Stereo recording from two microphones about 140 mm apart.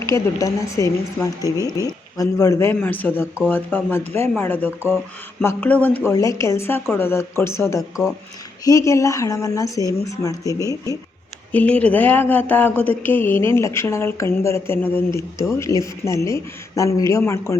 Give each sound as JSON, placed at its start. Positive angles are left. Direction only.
{"t": 0.0, "sound": "speech", "side_deg": 20}
{"t": 11.5, "sound": "speech", "side_deg": 10}